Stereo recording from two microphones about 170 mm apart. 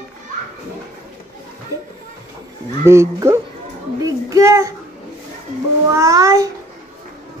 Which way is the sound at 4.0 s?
20° right (ahead or behind).